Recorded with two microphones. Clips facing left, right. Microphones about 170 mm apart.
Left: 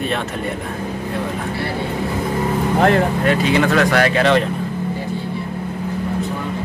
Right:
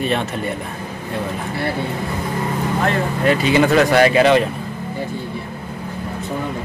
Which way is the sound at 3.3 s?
5° right (ahead or behind).